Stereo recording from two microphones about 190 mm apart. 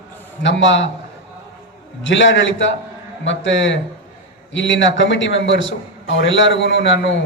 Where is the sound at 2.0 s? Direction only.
75° left (ahead or behind).